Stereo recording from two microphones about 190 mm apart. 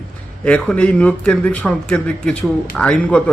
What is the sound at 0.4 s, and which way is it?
A man's voice, 5° left (ahead or behind).